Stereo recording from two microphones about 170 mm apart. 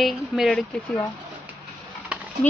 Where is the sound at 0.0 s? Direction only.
Centre (ahead or behind).